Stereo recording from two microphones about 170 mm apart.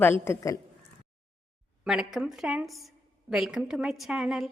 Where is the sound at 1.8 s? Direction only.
5° right (ahead or behind).